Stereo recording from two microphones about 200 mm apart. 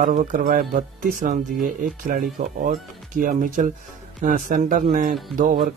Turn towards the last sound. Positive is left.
turn(degrees=-45)  # may be behind; listen again after turning